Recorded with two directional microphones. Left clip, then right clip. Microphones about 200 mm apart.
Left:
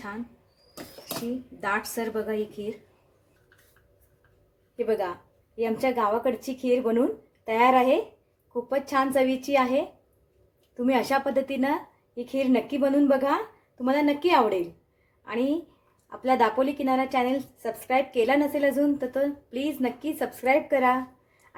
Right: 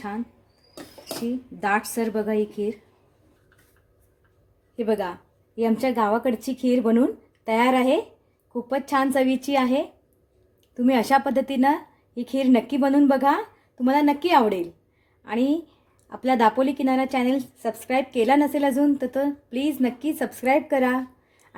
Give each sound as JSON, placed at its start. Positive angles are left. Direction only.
{"t": 1.6, "sound": "a woman's voice", "side_deg": -45}
{"t": 4.9, "sound": "a woman's voice", "side_deg": -45}